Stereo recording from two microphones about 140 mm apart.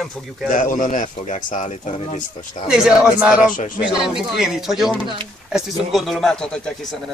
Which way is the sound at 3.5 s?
70° left (ahead or behind).